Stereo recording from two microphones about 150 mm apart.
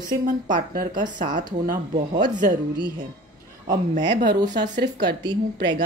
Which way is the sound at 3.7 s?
60° right (ahead or behind).